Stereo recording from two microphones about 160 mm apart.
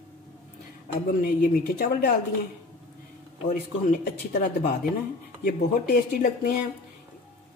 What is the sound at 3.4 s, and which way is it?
Speech, 65° left (ahead or behind).